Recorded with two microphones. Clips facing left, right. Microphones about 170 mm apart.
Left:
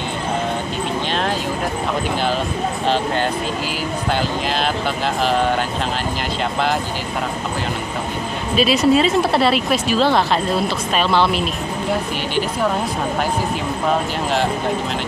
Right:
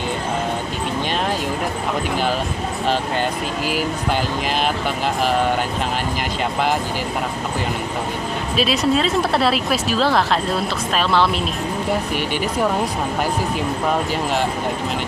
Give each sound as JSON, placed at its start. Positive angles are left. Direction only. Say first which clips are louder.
{"t": 8.5, "sound": "speech", "louder": "left 4 dB", "side_deg": 0}